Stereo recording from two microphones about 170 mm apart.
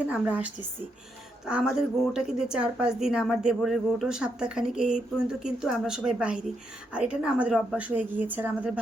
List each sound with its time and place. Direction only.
0.0 s a woman's voice: 10° right (ahead or behind)